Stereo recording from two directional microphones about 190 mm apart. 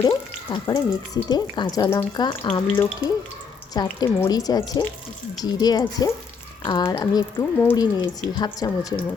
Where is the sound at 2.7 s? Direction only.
10° left (ahead or behind).